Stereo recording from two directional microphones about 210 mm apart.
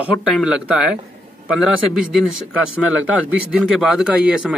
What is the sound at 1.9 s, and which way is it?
Speech, 5° right (ahead or behind).